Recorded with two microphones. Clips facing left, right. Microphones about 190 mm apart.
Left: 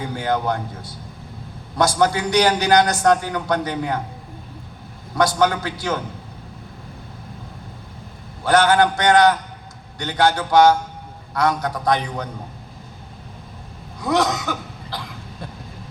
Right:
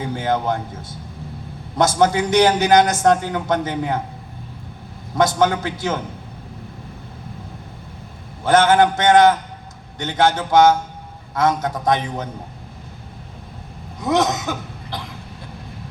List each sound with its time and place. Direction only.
0.2 s a man's voice: 20° right (ahead or behind)
5.1 s a man's voice: 20° right (ahead or behind)
8.4 s a man's voice: 20° right (ahead or behind)
14.0 s cough: 20° right (ahead or behind)